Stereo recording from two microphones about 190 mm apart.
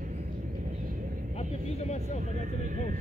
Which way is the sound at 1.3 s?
35° left (ahead or behind).